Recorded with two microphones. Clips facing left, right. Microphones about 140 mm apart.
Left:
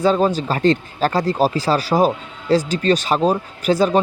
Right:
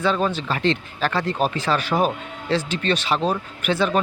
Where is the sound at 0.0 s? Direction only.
40° left (ahead or behind).